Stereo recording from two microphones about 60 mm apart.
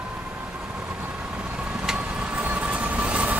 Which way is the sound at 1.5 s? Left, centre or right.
Centre.